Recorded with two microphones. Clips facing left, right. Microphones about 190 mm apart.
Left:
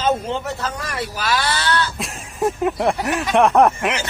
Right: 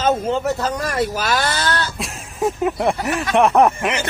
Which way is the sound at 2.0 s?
Centre (ahead or behind).